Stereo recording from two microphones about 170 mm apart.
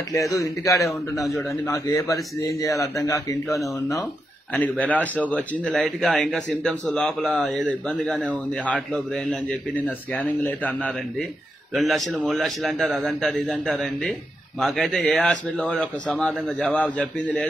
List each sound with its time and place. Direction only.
0.1 s a man's voice: 20° left (ahead or behind)
4.6 s a man's voice: 10° left (ahead or behind)